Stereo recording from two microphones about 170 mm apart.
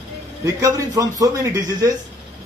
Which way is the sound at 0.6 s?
20° right (ahead or behind).